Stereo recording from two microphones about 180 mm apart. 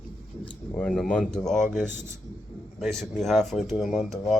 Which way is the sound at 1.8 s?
45° left (ahead or behind).